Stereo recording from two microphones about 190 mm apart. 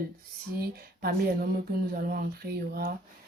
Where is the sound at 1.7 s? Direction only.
50° right (ahead or behind).